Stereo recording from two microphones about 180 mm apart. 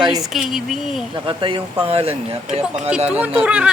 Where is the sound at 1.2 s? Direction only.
25° right (ahead or behind).